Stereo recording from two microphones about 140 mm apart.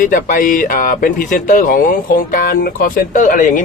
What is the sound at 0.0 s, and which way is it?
Speech, 75° left (ahead or behind).